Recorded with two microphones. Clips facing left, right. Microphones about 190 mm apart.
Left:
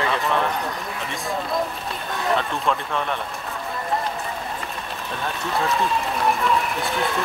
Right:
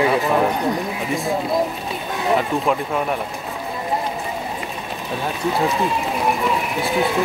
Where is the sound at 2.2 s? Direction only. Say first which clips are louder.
Right 4 dB; 10° right (ahead or behind).